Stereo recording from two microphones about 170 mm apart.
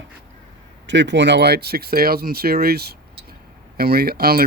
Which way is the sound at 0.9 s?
90° right.